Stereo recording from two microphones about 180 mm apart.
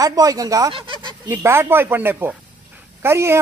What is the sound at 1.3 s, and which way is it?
Speech, 15° right (ahead or behind).